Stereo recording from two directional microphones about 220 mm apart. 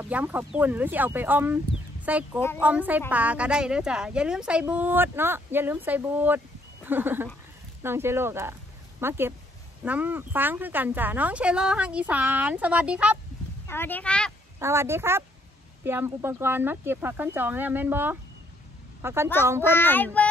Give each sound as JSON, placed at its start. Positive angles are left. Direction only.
{"t": 0.0, "sound": "a woman's voice", "side_deg": -10}
{"t": 13.7, "sound": "speech", "side_deg": 10}
{"t": 14.6, "sound": "a woman's voice", "side_deg": -10}
{"t": 19.6, "sound": "speech", "side_deg": 10}